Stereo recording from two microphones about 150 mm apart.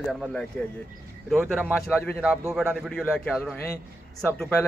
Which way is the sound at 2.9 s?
5° left (ahead or behind).